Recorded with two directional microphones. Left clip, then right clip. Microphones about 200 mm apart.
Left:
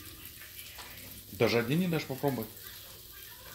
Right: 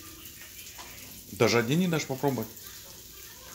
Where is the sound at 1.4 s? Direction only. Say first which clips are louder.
Right 4 dB; 15° right (ahead or behind).